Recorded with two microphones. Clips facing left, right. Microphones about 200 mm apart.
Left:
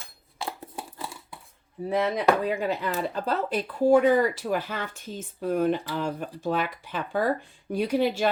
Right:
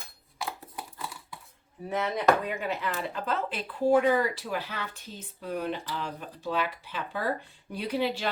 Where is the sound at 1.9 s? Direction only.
35° left (ahead or behind).